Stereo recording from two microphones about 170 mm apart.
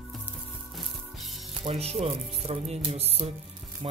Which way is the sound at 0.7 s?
Centre (ahead or behind).